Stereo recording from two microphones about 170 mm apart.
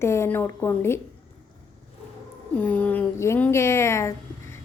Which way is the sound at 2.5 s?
10° left (ahead or behind).